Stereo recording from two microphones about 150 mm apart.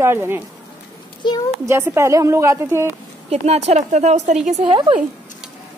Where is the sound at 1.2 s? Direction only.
30° left (ahead or behind).